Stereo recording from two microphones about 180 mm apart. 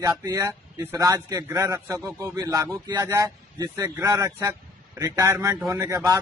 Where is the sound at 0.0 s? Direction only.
20° right (ahead or behind).